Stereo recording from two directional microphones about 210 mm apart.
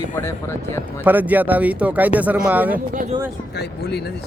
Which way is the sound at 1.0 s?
10° right (ahead or behind).